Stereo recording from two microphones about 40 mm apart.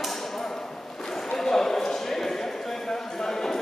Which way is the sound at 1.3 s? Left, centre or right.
Centre.